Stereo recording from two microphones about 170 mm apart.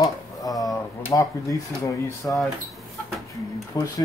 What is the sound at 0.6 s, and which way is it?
Speech, 20° left (ahead or behind).